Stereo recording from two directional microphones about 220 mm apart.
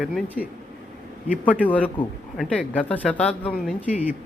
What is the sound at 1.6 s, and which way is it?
Speech, 5° left (ahead or behind).